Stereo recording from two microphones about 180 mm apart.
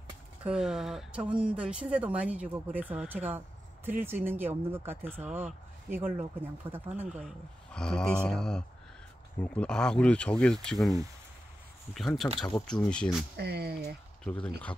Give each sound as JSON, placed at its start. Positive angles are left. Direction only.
{"t": 0.4, "sound": "speech", "side_deg": -5}
{"t": 7.2, "sound": "speech", "side_deg": 5}
{"t": 13.4, "sound": "speech", "side_deg": -65}
{"t": 14.2, "sound": "speech", "side_deg": 5}